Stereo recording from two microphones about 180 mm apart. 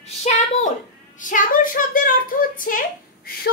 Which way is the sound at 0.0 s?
40° left (ahead or behind).